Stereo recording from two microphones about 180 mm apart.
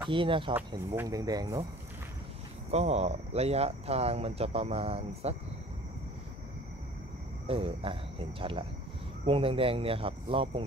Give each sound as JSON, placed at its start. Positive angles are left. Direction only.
{"t": 0.1, "sound": "speech", "side_deg": -30}
{"t": 2.7, "sound": "speech", "side_deg": -35}
{"t": 7.4, "sound": "speech", "side_deg": -30}